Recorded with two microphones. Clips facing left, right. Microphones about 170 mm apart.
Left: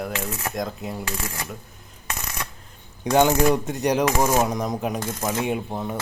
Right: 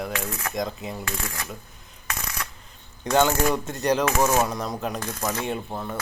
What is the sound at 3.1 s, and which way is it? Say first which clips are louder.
Speech: left 3 dB; 15° left (ahead or behind).